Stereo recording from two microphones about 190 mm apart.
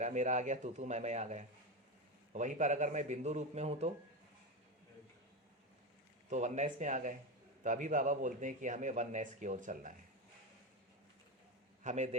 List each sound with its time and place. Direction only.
0.0 s a man's voice: 40° right (ahead or behind)
6.3 s a man's voice: 35° right (ahead or behind)
11.8 s a man's voice: 40° right (ahead or behind)